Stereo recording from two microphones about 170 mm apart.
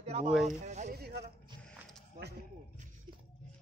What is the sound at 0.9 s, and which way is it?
Speech, 65° right (ahead or behind).